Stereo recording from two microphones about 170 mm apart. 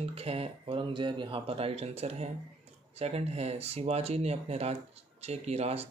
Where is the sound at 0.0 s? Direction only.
35° right (ahead or behind).